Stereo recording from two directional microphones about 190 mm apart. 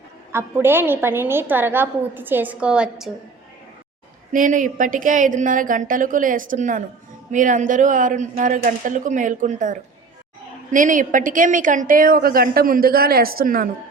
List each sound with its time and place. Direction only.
0.3 s a woman's voice: 10° right (ahead or behind)
4.3 s a woman's voice: 45° right (ahead or behind)